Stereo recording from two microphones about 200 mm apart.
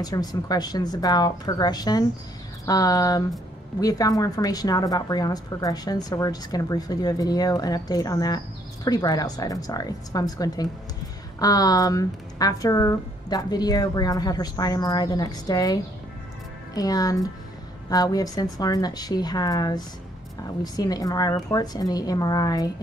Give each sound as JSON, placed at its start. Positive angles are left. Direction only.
{"t": 0.0, "sound": "a woman's voice", "side_deg": 20}